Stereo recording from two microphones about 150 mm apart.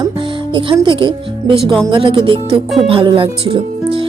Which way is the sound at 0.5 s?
35° right (ahead or behind).